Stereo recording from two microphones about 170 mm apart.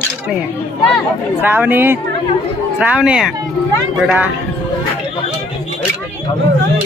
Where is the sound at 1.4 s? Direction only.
10° right (ahead or behind).